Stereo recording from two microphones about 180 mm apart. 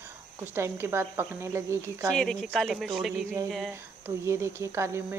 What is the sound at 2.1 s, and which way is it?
A woman's voice, 5° left (ahead or behind).